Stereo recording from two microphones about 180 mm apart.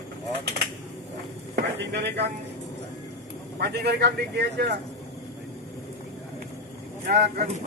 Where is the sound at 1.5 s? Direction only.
70° right (ahead or behind).